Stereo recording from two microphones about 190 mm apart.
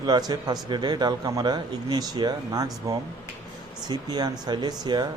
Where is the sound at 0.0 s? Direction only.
20° right (ahead or behind).